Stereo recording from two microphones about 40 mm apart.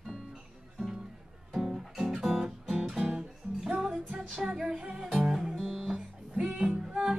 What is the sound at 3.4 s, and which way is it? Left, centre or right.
Music, right.